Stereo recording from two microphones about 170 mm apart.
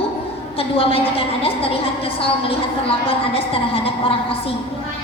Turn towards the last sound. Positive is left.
turn(degrees=35)  # may be behind; listen again after turning